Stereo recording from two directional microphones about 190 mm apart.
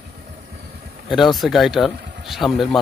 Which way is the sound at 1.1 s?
Centre (ahead or behind).